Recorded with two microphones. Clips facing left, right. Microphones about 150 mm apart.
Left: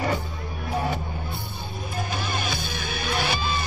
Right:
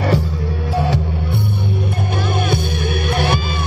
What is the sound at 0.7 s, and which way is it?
Music, 85° right.